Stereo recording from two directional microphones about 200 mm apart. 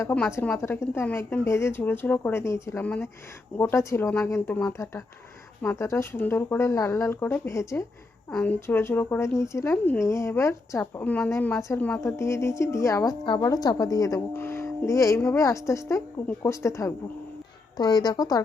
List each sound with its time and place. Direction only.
0.0 s a woman's voice: 10° left (ahead or behind)